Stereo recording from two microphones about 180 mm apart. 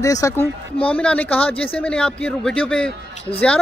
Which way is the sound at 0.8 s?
5° left (ahead or behind).